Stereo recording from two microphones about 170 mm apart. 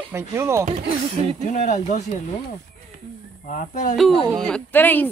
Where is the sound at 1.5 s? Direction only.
45° left (ahead or behind).